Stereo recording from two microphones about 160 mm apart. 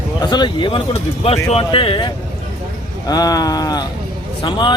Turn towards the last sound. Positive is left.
turn(degrees=30)  # may be behind; listen again after turning